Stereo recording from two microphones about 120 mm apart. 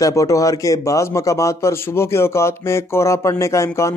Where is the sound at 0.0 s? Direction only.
25° left (ahead or behind).